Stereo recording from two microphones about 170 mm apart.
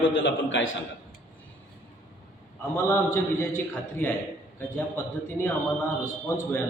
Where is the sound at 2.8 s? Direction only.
15° left (ahead or behind).